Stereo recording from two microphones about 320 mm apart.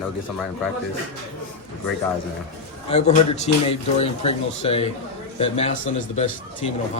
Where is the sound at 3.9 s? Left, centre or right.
Centre.